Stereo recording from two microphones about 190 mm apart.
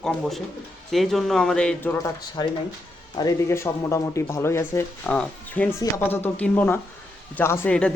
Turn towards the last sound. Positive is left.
turn(degrees=5)  # may be behind; listen again after turning